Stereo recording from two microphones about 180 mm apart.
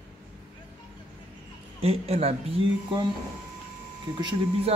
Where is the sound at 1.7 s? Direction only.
35° right (ahead or behind).